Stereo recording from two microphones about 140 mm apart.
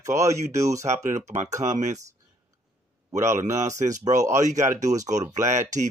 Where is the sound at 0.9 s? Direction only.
55° right (ahead or behind).